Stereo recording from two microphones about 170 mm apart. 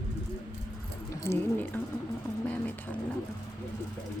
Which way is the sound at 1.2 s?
15° left (ahead or behind).